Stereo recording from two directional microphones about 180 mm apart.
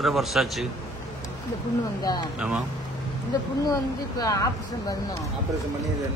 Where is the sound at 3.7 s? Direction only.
20° left (ahead or behind).